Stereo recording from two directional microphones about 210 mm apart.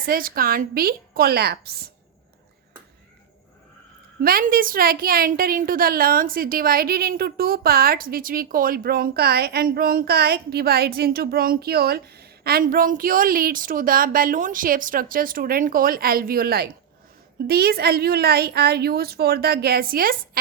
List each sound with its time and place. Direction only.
0.0 s a woman's voice: 45° right (ahead or behind)
4.2 s a woman's voice: 45° right (ahead or behind)